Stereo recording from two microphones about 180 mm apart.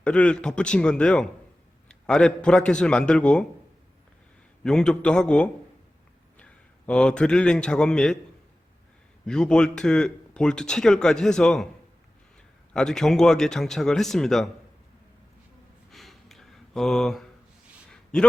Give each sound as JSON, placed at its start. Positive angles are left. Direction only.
{"t": 0.0, "sound": "speech", "side_deg": 5}
{"t": 4.6, "sound": "a man's voice", "side_deg": 5}
{"t": 9.2, "sound": "speech", "side_deg": 5}
{"t": 12.7, "sound": "speech", "side_deg": 5}
{"t": 15.9, "sound": "a sound", "side_deg": 0}